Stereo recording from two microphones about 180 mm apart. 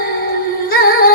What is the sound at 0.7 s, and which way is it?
Music, 55° left (ahead or behind).